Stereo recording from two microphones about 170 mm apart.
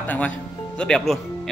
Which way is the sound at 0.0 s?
10° left (ahead or behind).